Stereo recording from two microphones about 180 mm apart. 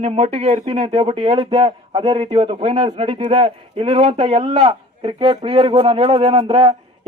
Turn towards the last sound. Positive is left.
turn(degrees=-30)  # may be behind; listen again after turning